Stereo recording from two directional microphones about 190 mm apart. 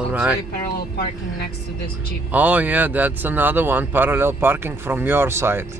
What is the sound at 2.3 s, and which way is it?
Speech, 10° right (ahead or behind).